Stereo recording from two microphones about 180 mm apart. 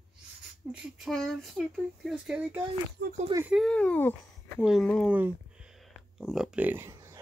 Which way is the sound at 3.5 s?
5° left (ahead or behind).